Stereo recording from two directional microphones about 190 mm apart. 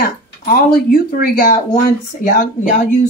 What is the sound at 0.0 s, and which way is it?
Speech, 50° left (ahead or behind).